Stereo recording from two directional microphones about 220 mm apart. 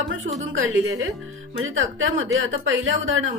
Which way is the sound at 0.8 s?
60° right (ahead or behind).